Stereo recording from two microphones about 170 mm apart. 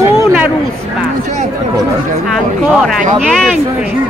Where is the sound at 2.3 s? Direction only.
Centre (ahead or behind).